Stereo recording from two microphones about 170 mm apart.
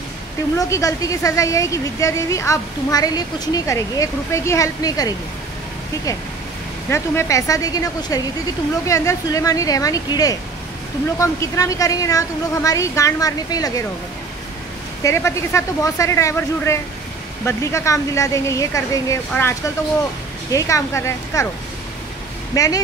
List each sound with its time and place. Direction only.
0.6 s a woman's voice: 20° left (ahead or behind)
6.9 s a woman's voice: 15° left (ahead or behind)
15.0 s speech: 15° left (ahead or behind)
20.5 s a woman's voice: 20° left (ahead or behind)
22.5 s speech: 20° left (ahead or behind)